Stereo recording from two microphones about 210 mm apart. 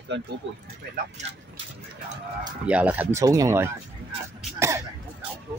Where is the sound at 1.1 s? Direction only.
30° right (ahead or behind).